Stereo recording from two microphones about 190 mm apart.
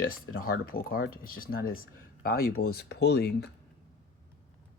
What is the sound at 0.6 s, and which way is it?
Speech, 50° left (ahead or behind).